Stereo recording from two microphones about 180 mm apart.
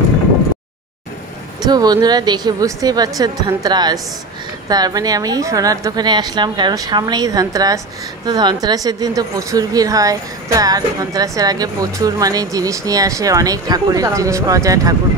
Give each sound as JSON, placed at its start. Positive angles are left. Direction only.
{"t": 1.6, "sound": "a woman's voice", "side_deg": -20}